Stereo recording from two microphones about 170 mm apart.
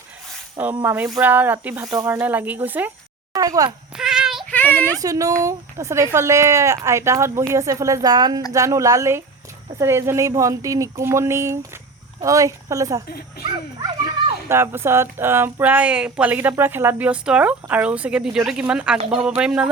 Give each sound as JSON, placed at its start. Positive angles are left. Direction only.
{"t": 0.5, "sound": "speech", "side_deg": -10}
{"t": 3.3, "sound": "speech", "side_deg": -20}
{"t": 3.9, "sound": "a sound", "side_deg": -5}
{"t": 4.5, "sound": "a child's voice", "side_deg": 10}
{"t": 4.9, "sound": "speech", "side_deg": -20}
{"t": 13.1, "sound": "a child's voice", "side_deg": 65}
{"t": 14.4, "sound": "speech", "side_deg": -15}